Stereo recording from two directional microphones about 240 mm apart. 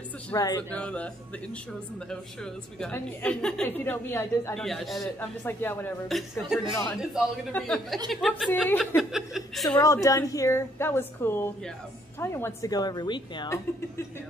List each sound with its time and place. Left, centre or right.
0.3 s a woman's voice: centre
0.7 s a woman's voice: centre
9.8 s a woman's voice: centre